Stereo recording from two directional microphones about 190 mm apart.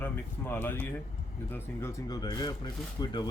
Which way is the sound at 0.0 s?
10° left (ahead or behind).